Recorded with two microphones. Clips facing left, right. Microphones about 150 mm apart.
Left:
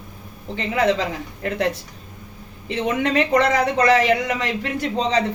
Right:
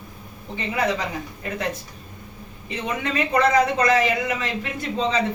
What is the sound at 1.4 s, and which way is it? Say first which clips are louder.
Speech: left 6 dB; 70° left (ahead or behind).